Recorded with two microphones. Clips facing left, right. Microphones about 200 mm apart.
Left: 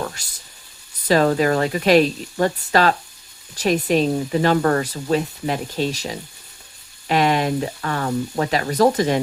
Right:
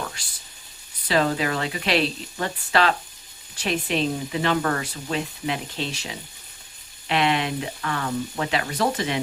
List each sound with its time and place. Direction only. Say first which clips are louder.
1.0 s speech: left 6 dB; 45° left (ahead or behind)